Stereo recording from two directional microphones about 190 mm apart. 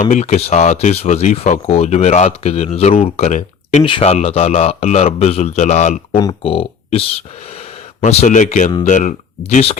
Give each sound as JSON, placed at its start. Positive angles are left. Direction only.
{"t": 0.0, "sound": "speech", "side_deg": 40}
{"t": 6.1, "sound": "speech", "side_deg": 20}